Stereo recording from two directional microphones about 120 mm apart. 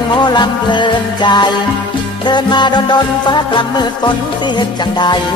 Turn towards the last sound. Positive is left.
turn(degrees=40)  # may be behind; listen again after turning